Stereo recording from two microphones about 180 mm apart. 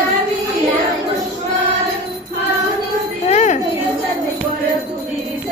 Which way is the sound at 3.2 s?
40° left (ahead or behind).